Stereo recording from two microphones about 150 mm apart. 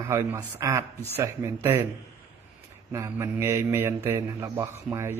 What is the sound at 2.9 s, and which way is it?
A man's voice, 20° right (ahead or behind).